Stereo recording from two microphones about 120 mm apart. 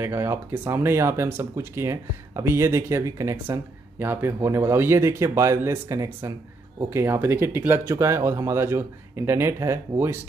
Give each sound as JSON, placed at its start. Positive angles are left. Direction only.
{"t": 0.0, "sound": "speech", "side_deg": -25}